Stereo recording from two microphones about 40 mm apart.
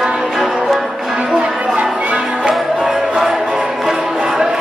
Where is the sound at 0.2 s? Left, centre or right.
Centre.